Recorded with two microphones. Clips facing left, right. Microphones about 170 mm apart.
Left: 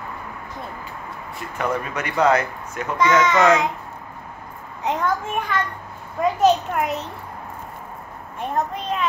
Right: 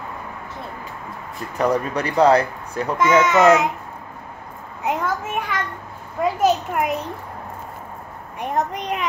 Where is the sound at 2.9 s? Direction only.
5° right (ahead or behind).